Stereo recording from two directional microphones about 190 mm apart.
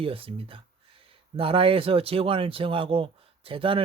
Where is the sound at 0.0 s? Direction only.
30° right (ahead or behind).